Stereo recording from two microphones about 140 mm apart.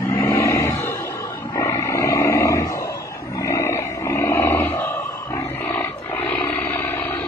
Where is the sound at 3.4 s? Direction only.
20° left (ahead or behind).